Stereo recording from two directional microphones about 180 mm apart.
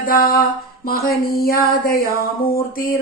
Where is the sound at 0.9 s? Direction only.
55° left (ahead or behind).